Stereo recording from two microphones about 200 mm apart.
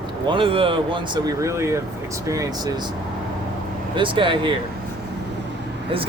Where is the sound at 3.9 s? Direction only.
25° right (ahead or behind).